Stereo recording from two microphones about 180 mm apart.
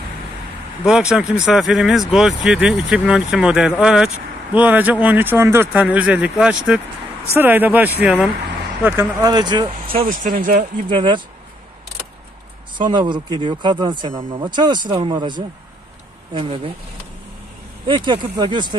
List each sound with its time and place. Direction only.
0.8 s speech: 5° right (ahead or behind); by 10.0 s 30° right (ahead or behind)
10.0 s speech: 50° right (ahead or behind)
10.9 s speech: 25° right (ahead or behind)
12.7 s speech: 25° right (ahead or behind)
16.3 s speech: 35° right (ahead or behind)
17.8 s speech: 25° right (ahead or behind)